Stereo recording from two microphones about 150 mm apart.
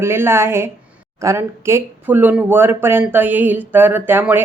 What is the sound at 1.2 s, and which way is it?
Speech, 20° right (ahead or behind).